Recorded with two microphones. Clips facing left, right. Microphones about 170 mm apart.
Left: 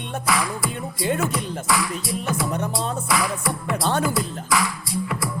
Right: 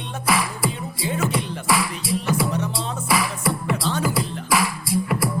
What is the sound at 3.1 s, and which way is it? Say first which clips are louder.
Music: right 4 dB; 25° right (ahead or behind).